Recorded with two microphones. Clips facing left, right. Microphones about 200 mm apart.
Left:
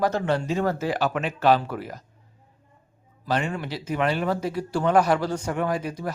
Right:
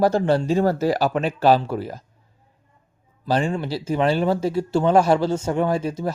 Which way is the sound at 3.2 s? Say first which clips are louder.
Right 5 dB; 30° right (ahead or behind).